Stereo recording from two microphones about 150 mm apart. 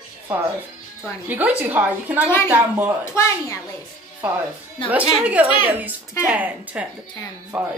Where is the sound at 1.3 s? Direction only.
10° right (ahead or behind).